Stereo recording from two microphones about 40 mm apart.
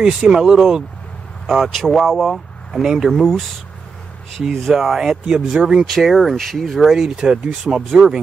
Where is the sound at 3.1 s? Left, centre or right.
Centre.